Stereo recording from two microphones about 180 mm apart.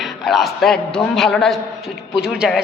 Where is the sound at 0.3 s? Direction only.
Centre (ahead or behind).